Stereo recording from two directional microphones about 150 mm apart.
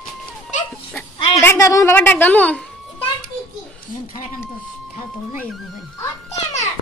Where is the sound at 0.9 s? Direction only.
15° left (ahead or behind).